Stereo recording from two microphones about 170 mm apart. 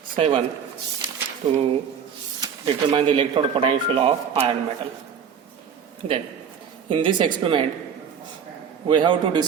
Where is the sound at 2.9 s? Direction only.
30° right (ahead or behind).